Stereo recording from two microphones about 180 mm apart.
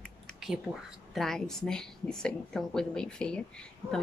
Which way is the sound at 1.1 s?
Centre (ahead or behind).